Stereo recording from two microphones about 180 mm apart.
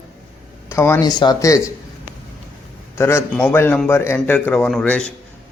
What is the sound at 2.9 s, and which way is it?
A man's voice, 15° left (ahead or behind).